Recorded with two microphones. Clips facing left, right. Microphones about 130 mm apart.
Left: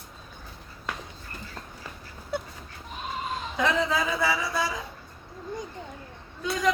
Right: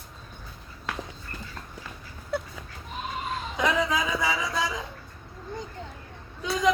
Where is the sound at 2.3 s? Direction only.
Centre (ahead or behind).